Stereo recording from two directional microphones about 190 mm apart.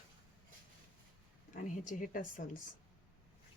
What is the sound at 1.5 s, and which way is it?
Speech, 40° left (ahead or behind).